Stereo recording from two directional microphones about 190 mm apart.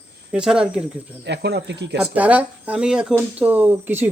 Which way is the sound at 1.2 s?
65° right (ahead or behind).